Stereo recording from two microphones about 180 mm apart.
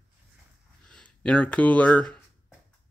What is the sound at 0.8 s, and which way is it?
Speech, 5° left (ahead or behind).